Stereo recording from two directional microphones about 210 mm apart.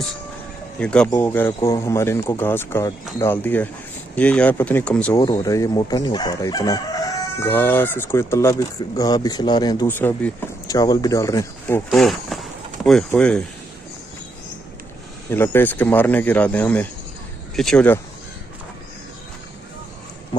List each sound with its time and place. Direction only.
0.7 s speech: 5° left (ahead or behind)
5.1 s speech: 20° left (ahead or behind)
15.2 s speech: 10° left (ahead or behind)